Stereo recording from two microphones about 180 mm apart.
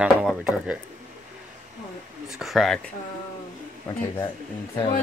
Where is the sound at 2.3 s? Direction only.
Centre (ahead or behind).